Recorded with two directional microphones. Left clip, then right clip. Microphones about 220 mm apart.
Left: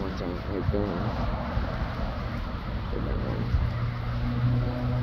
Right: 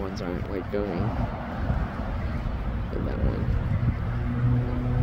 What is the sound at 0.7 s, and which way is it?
Speech, 20° right (ahead or behind).